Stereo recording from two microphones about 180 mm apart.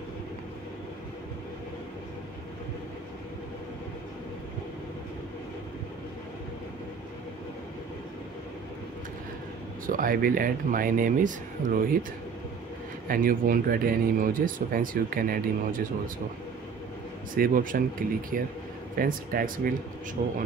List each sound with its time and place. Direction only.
9.8 s speech: 50° right (ahead or behind)
13.1 s speech: 50° right (ahead or behind)
17.4 s speech: 50° right (ahead or behind)